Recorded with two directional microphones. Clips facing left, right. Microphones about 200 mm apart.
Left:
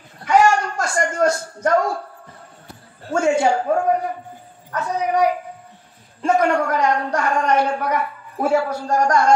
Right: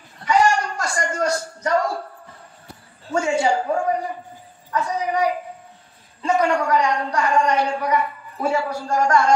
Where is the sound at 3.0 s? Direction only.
55° left (ahead or behind).